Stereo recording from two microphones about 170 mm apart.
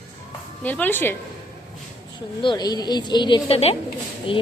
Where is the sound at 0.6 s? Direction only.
10° left (ahead or behind).